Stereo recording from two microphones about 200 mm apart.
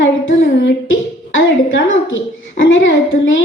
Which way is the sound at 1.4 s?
65° left (ahead or behind).